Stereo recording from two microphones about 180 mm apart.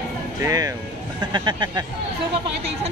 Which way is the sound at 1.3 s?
25° right (ahead or behind).